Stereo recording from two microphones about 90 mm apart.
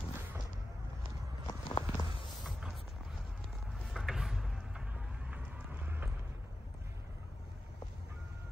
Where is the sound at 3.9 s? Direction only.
5° right (ahead or behind).